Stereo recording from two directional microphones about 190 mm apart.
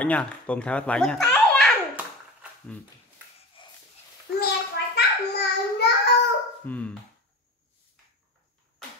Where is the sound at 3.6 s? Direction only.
25° left (ahead or behind).